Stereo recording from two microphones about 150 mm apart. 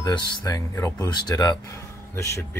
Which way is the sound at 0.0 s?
25° left (ahead or behind).